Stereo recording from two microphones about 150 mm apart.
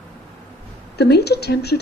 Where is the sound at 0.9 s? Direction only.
90° left.